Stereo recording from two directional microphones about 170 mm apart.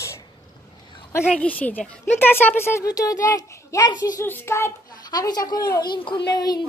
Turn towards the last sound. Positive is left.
turn(degrees=25)  # may be behind; listen again after turning